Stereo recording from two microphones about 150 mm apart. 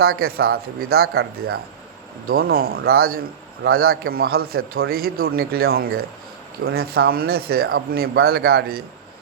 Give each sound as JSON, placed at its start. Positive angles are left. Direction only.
{"t": 0.0, "sound": "a man's voice", "side_deg": -90}